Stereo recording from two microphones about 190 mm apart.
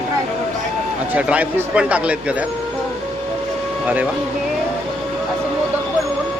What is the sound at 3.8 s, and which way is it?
Speech, 5° right (ahead or behind).